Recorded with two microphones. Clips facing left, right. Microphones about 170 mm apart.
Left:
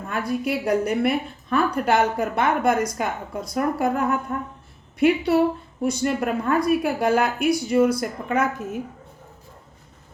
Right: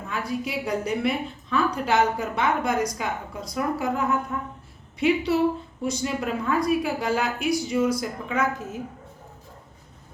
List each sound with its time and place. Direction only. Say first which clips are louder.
0.1 s a woman's voice: left 4 dB; 60° left (ahead or behind)